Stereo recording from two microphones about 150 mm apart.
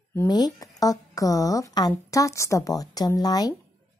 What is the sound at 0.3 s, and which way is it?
A woman's voice, 25° left (ahead or behind).